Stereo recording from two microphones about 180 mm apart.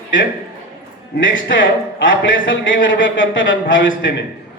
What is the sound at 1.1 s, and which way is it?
A man's voice, 90° left.